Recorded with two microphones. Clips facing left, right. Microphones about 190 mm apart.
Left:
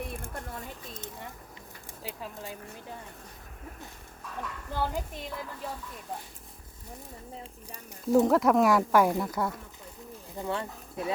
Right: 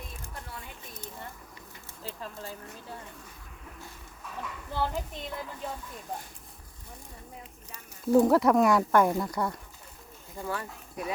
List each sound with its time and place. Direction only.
0.1 s a sound: 50° left (ahead or behind)
2.0 s speech: 15° left (ahead or behind)
4.7 s speech: 10° left (ahead or behind)
8.1 s speech: centre (ahead or behind)
10.3 s speech: 20° left (ahead or behind)